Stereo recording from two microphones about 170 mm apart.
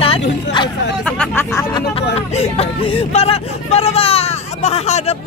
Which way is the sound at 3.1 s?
35° left (ahead or behind).